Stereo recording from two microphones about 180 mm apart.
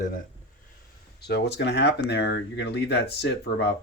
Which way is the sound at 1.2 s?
65° left (ahead or behind).